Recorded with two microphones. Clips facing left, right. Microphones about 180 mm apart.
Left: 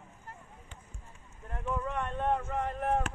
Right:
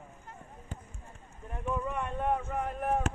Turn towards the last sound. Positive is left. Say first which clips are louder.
# even
turn(degrees=-5)  # may be behind; listen again after turning